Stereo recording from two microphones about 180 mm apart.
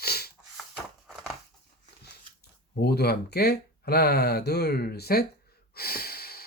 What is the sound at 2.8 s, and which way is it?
Speech, 60° left (ahead or behind).